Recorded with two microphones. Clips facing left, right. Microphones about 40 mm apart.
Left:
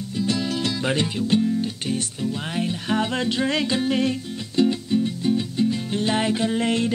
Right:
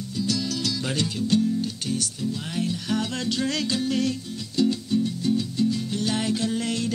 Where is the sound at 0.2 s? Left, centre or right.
Left.